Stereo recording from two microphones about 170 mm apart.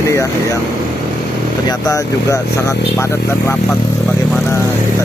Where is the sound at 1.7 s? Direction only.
20° left (ahead or behind).